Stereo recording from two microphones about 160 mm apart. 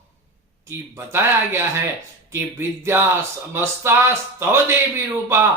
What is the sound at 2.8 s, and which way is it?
Speech, 15° right (ahead or behind).